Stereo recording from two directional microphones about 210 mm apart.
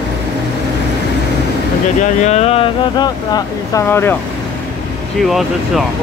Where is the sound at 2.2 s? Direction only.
30° left (ahead or behind); by 4.2 s 10° left (ahead or behind).